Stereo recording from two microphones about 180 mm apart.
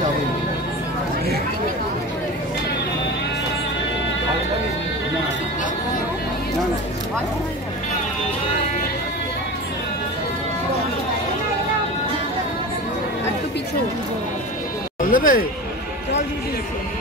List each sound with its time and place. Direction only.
15.0 s music: 50° left (ahead or behind)